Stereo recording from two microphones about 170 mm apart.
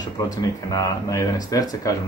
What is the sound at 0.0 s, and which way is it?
Speech, 20° left (ahead or behind).